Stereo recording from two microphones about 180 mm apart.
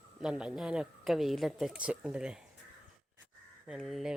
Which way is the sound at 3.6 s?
Centre (ahead or behind).